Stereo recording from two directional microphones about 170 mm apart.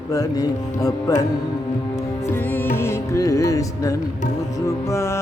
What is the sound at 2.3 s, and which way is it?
Music, 10° left (ahead or behind).